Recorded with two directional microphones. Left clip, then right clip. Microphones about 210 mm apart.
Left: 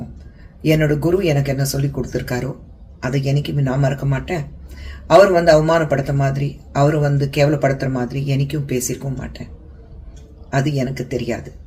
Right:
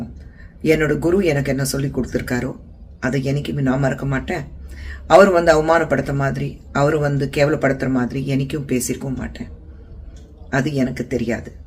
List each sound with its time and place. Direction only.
0.7 s a man's voice: 15° right (ahead or behind)
10.5 s a man's voice: 15° right (ahead or behind)